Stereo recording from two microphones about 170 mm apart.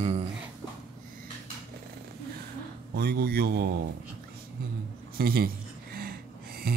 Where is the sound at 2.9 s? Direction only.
70° right (ahead or behind).